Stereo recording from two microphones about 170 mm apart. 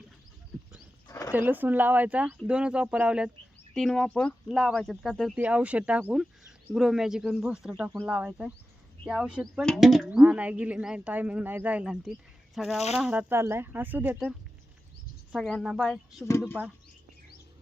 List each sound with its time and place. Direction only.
1.0 s a sound: 20° left (ahead or behind)
1.3 s speech: 10° right (ahead or behind)
15.3 s speech: centre (ahead or behind)